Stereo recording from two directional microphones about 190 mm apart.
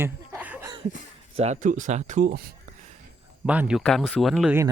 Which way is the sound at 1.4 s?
40° right (ahead or behind).